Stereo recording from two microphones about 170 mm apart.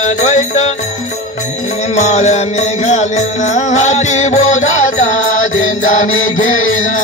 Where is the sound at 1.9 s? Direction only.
45° left (ahead or behind).